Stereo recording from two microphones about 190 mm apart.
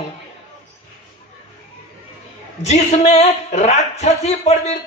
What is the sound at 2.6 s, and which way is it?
A man's voice, 35° left (ahead or behind).